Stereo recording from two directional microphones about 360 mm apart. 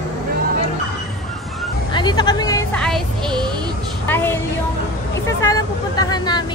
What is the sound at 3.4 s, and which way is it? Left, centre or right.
Bleat, centre.